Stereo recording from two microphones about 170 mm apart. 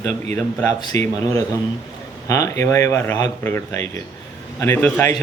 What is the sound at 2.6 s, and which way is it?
A man's voice, 15° left (ahead or behind).